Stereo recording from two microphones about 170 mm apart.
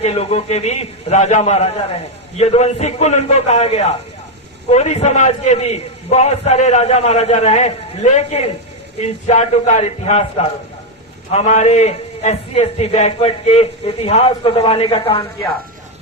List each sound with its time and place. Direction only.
0.0 s a man's voice: 40° left (ahead or behind)